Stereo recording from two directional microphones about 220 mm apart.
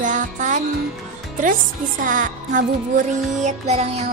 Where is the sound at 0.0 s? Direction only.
35° right (ahead or behind).